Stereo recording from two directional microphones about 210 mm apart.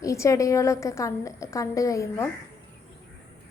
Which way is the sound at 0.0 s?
15° left (ahead or behind).